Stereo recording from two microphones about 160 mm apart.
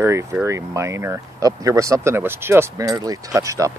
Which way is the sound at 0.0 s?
15° right (ahead or behind).